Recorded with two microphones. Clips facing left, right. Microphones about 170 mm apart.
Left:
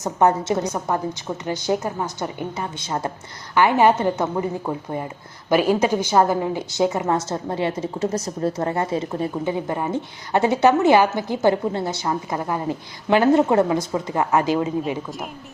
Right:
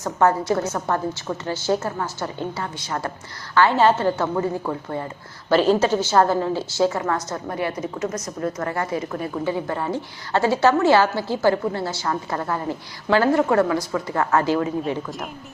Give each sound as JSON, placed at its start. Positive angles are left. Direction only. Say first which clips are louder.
{"t": 0.0, "sound": "a woman's voice", "louder": "left 1 dB", "side_deg": 20}